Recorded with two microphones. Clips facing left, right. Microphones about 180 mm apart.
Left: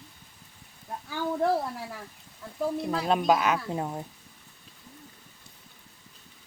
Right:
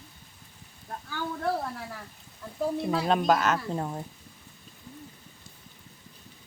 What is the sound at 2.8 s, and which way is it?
Speech, centre (ahead or behind).